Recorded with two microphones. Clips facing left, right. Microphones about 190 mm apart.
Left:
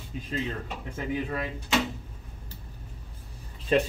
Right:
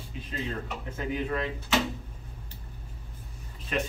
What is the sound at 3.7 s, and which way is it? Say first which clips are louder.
Speech: left 7 dB; 30° left (ahead or behind).